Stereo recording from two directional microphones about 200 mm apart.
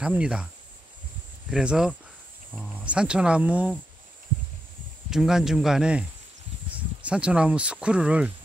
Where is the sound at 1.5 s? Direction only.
5° right (ahead or behind).